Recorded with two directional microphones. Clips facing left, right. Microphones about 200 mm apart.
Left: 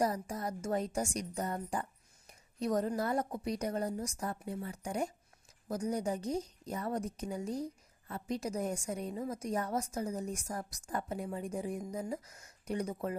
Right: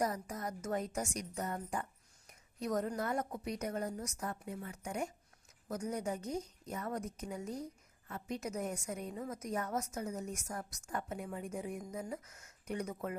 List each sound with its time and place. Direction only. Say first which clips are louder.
0.0 s a woman's voice: left 3 dB; 30° left (ahead or behind)